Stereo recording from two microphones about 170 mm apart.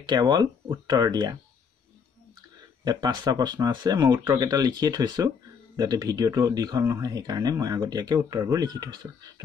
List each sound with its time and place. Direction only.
0.0 s speech: 25° right (ahead or behind)
2.8 s speech: 25° right (ahead or behind)